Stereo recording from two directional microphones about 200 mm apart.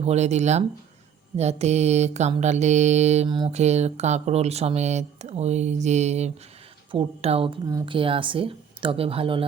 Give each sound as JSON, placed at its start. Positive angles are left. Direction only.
{"t": 0.0, "sound": "speech", "side_deg": -35}
{"t": 3.2, "sound": "speech", "side_deg": -25}